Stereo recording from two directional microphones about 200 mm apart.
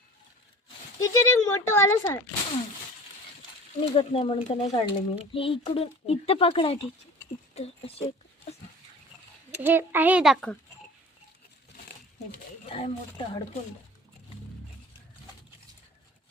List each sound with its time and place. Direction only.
0.9 s speech: 15° left (ahead or behind)
3.8 s speech: 30° left (ahead or behind)
4.7 s speech: 25° left (ahead or behind)
9.5 s a child's voice: 10° right (ahead or behind)
12.6 s speech: 30° left (ahead or behind)